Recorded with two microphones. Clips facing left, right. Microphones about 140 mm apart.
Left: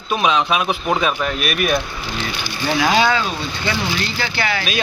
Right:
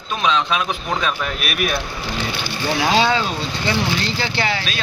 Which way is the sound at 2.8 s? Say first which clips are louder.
Left 1 dB; 25° right (ahead or behind).